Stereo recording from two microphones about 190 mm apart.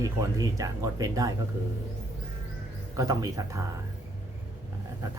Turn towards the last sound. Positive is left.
turn(degrees=-20)  # may be behind; listen again after turning